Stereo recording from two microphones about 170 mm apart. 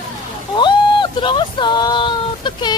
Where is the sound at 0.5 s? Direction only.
25° left (ahead or behind).